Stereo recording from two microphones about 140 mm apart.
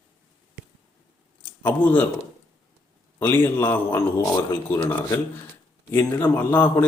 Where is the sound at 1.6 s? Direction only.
15° left (ahead or behind).